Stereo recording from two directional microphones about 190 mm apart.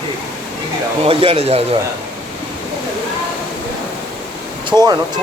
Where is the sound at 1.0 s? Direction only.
30° right (ahead or behind).